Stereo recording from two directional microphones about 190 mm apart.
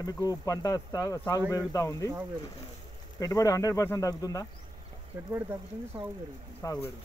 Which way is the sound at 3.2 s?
20° left (ahead or behind).